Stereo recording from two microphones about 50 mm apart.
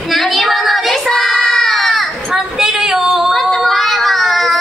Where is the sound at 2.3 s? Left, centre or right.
Centre.